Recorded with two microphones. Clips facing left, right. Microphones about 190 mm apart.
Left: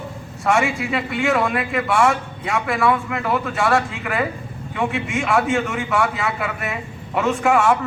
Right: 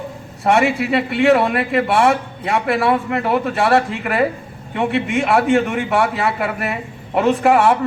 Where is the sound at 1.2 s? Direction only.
35° right (ahead or behind).